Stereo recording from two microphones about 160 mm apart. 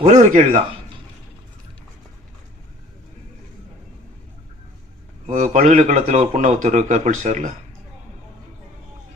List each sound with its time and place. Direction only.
0.0 s a man's voice: 50° right (ahead or behind)
5.2 s a man's voice: 45° right (ahead or behind)